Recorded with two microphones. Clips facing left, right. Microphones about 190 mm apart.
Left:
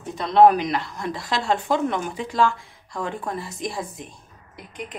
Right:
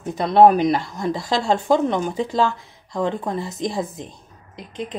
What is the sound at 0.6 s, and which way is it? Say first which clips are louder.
Speech: right 6 dB; 45° right (ahead or behind).